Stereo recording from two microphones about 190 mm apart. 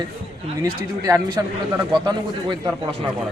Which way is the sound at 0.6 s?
20° right (ahead or behind).